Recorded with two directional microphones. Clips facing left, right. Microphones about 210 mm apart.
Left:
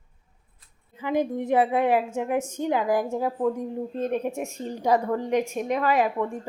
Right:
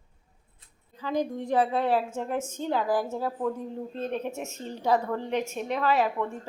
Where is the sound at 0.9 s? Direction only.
20° left (ahead or behind).